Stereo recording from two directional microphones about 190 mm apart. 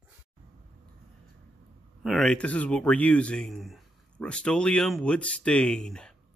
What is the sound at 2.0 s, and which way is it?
Speech, 5° left (ahead or behind).